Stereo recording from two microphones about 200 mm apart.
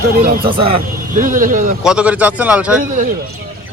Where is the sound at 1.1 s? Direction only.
40° right (ahead or behind).